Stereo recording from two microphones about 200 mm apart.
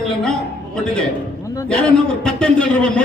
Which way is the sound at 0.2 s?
5° left (ahead or behind).